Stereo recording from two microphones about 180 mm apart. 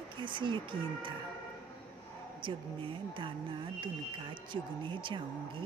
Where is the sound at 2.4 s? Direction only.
30° right (ahead or behind).